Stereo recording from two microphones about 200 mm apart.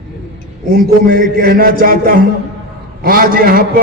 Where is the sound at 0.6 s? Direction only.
45° right (ahead or behind).